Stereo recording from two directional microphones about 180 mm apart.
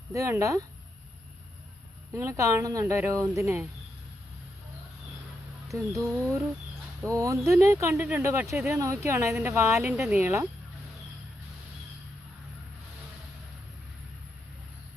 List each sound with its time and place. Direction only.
0.1 s speech: 15° right (ahead or behind)
2.1 s speech: 15° right (ahead or behind)
5.6 s speech: 15° right (ahead or behind)